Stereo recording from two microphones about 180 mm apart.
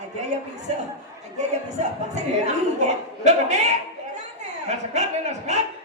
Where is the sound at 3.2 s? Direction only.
40° right (ahead or behind).